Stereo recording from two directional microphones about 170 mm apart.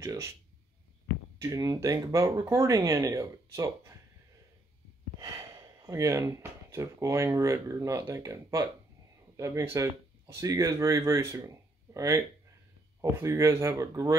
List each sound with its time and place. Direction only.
0.0 s speech: 15° right (ahead or behind)
1.4 s speech: 20° right (ahead or behind)
5.2 s speech: 20° right (ahead or behind)